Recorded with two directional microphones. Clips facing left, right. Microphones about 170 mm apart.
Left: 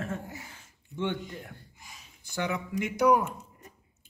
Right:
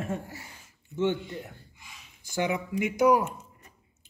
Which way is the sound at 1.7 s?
40° left (ahead or behind).